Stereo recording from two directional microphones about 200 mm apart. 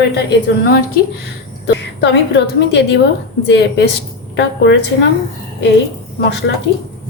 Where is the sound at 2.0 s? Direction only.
60° left (ahead or behind).